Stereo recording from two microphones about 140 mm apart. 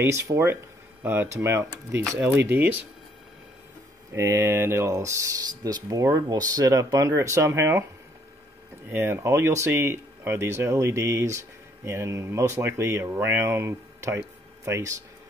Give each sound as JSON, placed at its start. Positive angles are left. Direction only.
{"t": 0.0, "sound": "speech", "side_deg": -20}
{"t": 4.1, "sound": "speech", "side_deg": -20}
{"t": 8.9, "sound": "speech", "side_deg": -15}